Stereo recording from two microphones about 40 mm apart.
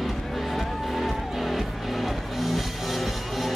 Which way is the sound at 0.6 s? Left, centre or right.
Centre.